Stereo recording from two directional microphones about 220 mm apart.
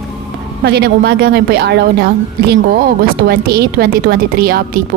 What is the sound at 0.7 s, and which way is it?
A woman's voice, 50° right (ahead or behind).